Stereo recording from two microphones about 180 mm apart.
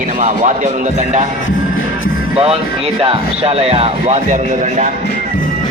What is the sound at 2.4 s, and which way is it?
Speech, 35° right (ahead or behind).